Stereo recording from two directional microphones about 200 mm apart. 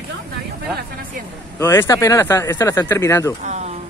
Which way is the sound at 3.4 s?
35° right (ahead or behind).